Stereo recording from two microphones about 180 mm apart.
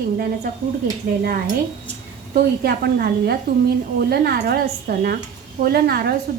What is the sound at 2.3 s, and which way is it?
A woman's voice, 55° right (ahead or behind).